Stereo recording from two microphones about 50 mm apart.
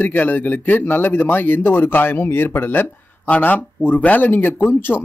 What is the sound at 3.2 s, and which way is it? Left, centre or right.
Speech, left.